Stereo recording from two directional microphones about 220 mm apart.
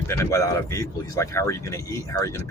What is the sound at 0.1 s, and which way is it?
Speech, 10° left (ahead or behind).